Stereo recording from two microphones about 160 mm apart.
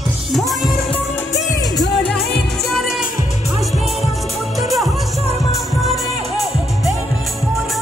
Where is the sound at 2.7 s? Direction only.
Centre (ahead or behind).